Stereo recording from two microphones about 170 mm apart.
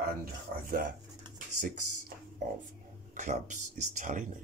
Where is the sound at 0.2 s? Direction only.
60° right (ahead or behind).